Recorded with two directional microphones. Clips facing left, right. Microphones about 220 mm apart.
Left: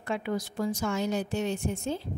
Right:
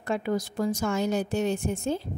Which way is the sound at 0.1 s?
40° right (ahead or behind).